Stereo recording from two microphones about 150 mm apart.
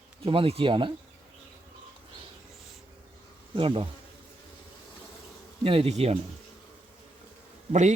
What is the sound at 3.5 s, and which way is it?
Speech, 35° right (ahead or behind).